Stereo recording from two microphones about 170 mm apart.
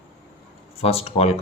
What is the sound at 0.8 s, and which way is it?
Speech, 35° left (ahead or behind).